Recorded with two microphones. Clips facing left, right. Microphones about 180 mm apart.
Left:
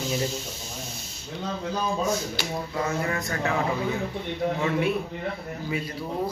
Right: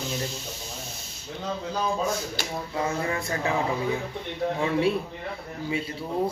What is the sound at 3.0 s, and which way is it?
Speech, 30° right (ahead or behind).